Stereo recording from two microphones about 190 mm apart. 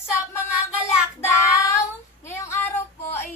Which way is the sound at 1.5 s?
15° left (ahead or behind).